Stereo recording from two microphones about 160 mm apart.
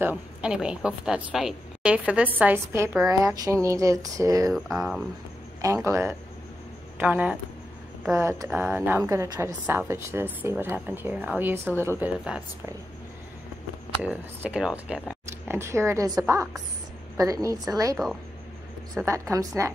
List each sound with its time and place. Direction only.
0.0 s a woman's voice: 10° right (ahead or behind)
4.5 s speech: centre (ahead or behind)
5.6 s a woman's voice: 20° right (ahead or behind)
14.0 s a woman's voice: 10° right (ahead or behind)
14.9 s a sound: 5° right (ahead or behind)
15.5 s a woman's voice: 15° right (ahead or behind)
19.0 s a woman's voice: 20° right (ahead or behind)